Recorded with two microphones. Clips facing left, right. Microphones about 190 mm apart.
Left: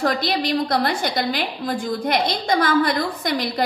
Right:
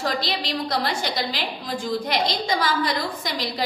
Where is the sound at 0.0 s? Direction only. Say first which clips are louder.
Left 5 dB; 55° left (ahead or behind).